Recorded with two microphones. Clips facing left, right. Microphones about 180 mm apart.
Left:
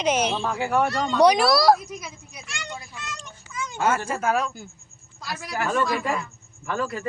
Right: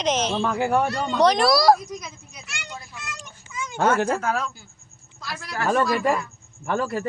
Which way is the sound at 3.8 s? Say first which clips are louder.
Right 4 dB; 65° right (ahead or behind).